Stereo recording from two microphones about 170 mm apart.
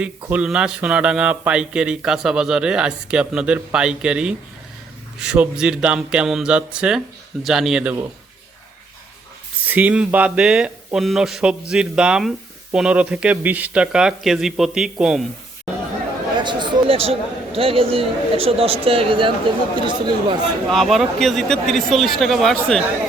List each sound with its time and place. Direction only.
0.0 s speech: 5° right (ahead or behind)
9.6 s speech: 10° right (ahead or behind)
16.4 s speech: 25° right (ahead or behind)
20.7 s speech: centre (ahead or behind)